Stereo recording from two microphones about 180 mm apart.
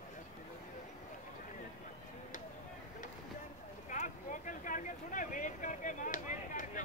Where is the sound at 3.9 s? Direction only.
45° left (ahead or behind).